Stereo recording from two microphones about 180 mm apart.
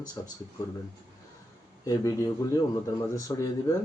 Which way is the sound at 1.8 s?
20° left (ahead or behind).